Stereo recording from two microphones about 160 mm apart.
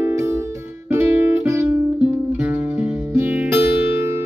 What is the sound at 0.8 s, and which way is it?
Guitar, 15° right (ahead or behind).